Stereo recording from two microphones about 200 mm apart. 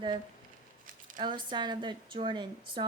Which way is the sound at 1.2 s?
25° right (ahead or behind).